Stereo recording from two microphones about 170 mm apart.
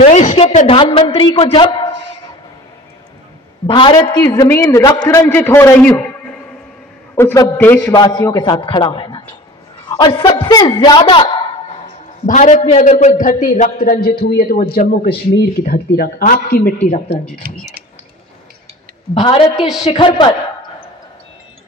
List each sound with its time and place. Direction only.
0.0 s a sound: 40° left (ahead or behind)
0.7 s a man's voice: 30° left (ahead or behind)
3.6 s a man's voice: 30° left (ahead or behind); by 5.9 s 10° left (ahead or behind)
7.2 s a man's voice: 15° left (ahead or behind)
7.9 s a man's voice: 25° left (ahead or behind)
12.3 s a man's voice: 45° left (ahead or behind)
19.1 s a man's voice: 30° left (ahead or behind)